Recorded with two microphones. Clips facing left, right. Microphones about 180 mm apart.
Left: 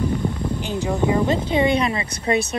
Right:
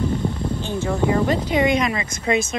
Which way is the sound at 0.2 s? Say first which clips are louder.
Even; 15° left (ahead or behind).